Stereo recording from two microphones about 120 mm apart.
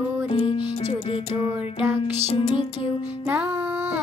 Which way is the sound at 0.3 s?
50° left (ahead or behind).